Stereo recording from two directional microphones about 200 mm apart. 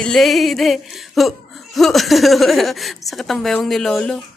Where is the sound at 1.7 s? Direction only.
Centre (ahead or behind).